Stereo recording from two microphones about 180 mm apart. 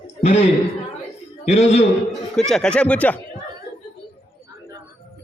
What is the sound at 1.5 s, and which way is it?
Speech, 35° left (ahead or behind).